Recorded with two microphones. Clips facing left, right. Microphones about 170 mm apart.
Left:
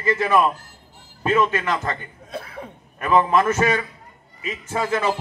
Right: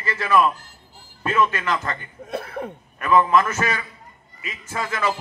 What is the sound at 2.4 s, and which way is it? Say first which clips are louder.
Speech: right 5 dB; 60° right (ahead or behind).